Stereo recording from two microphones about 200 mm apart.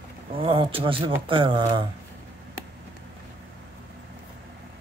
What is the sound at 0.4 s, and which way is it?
Speech, 25° right (ahead or behind).